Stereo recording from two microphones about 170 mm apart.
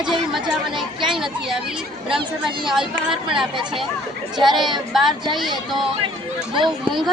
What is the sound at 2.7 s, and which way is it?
Speech, 5° right (ahead or behind).